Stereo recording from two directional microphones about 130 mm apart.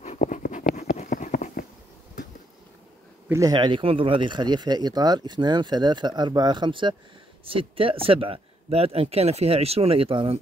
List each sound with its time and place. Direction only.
0.0 s writing: 70° left (ahead or behind)
3.3 s speech: 25° right (ahead or behind)
3.5 s speech: 35° right (ahead or behind)